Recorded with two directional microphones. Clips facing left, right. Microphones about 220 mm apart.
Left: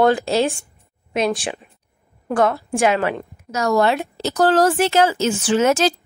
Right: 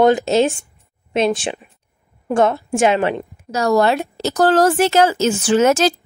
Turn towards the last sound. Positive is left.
turn(degrees=-45)  # may be behind; listen again after turning